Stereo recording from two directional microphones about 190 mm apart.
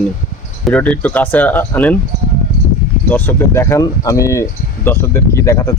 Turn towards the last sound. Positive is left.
turn(degrees=15)  # may be behind; listen again after turning